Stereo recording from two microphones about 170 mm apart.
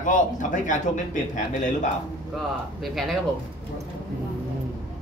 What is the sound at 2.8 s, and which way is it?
Speech, centre (ahead or behind).